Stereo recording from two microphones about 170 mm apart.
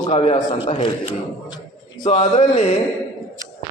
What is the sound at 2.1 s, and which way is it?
Speech, 40° left (ahead or behind).